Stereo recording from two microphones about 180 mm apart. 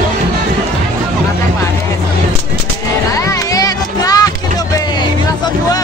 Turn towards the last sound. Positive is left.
turn(degrees=20)  # may be behind; listen again after turning